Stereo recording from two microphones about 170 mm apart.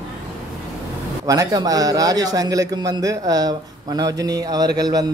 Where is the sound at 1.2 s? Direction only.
20° right (ahead or behind).